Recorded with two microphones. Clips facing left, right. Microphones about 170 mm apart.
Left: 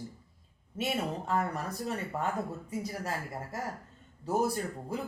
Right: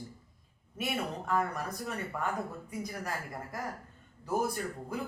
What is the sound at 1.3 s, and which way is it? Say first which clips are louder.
Speech: right 2 dB; 30° left (ahead or behind).